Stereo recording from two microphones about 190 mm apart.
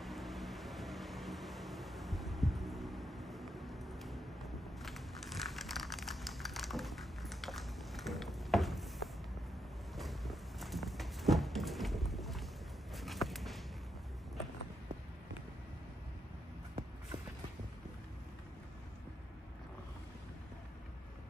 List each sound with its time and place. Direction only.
0.0 s vehicle: centre (ahead or behind)
4.8 s crumpling: centre (ahead or behind)
9.9 s walk: centre (ahead or behind)
12.9 s a sound: centre (ahead or behind)